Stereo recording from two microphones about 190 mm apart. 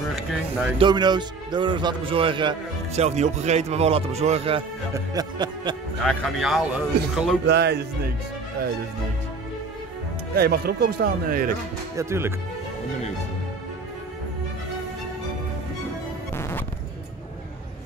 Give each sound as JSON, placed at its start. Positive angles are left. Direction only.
{"t": 0.7, "sound": "a man's voice", "side_deg": -25}
{"t": 6.0, "sound": "speech", "side_deg": 0}
{"t": 7.4, "sound": "speech", "side_deg": -60}
{"t": 10.3, "sound": "speech", "side_deg": -55}
{"t": 12.0, "sound": "speech", "side_deg": -15}
{"t": 16.3, "sound": "music", "side_deg": 15}